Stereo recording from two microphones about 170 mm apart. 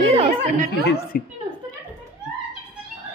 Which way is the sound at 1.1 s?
60° left (ahead or behind).